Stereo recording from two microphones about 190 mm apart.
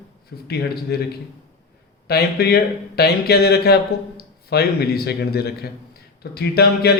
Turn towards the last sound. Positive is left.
turn(degrees=55)  # may be behind; listen again after turning